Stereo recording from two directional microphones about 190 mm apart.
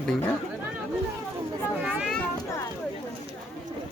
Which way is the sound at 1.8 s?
5° right (ahead or behind).